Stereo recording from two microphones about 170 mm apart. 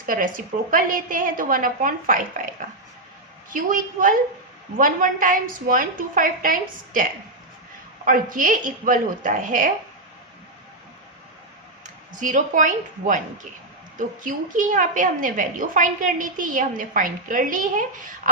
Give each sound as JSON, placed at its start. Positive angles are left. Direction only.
{"t": 0.0, "sound": "a woman's voice", "side_deg": -55}
{"t": 3.5, "sound": "a woman's voice", "side_deg": -55}
{"t": 12.2, "sound": "a woman's voice", "side_deg": -50}